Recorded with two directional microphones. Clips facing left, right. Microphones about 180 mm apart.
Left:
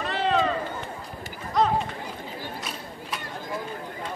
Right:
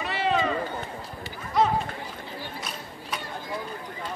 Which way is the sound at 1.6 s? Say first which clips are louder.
Even; centre (ahead or behind).